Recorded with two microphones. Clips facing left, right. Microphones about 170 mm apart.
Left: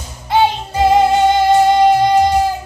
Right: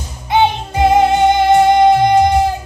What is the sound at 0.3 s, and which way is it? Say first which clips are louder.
Music: right 1 dB; 20° right (ahead or behind).